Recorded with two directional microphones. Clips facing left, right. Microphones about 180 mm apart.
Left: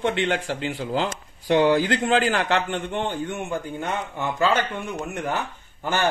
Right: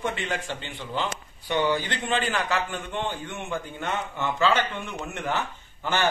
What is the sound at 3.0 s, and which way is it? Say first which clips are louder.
Speech: left 5 dB; 50° left (ahead or behind).